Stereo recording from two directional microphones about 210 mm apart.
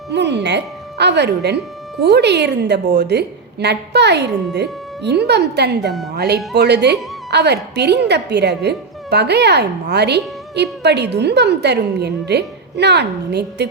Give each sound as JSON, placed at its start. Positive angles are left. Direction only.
{"t": 0.1, "sound": "a woman's voice", "side_deg": -55}